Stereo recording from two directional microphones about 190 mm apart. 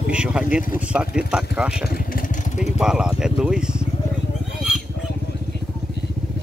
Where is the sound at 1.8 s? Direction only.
50° left (ahead or behind).